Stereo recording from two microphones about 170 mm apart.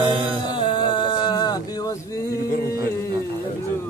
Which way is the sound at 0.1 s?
30° right (ahead or behind).